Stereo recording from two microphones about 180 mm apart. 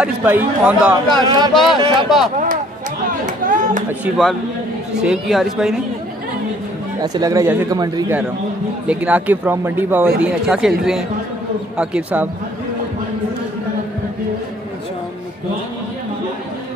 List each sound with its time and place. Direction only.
0.0 s speech: 10° right (ahead or behind)
1.2 s speech: 25° right (ahead or behind)
1.5 s a woman's voice: centre (ahead or behind)
2.3 s a sound: 45° right (ahead or behind)
3.4 s chatter: 45° right (ahead or behind)
4.9 s a woman's voice: 5° right (ahead or behind)
7.0 s speech: 20° right (ahead or behind)
8.8 s a woman's voice: 5° right (ahead or behind)